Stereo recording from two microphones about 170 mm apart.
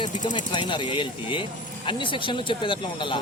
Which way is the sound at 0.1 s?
45° left (ahead or behind).